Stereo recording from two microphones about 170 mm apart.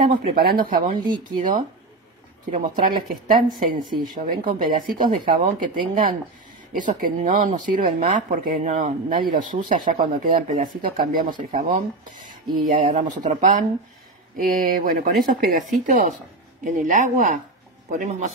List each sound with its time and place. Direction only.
0.1 s speech: 60° right (ahead or behind)
2.5 s speech: 50° right (ahead or behind)
16.6 s speech: 50° right (ahead or behind)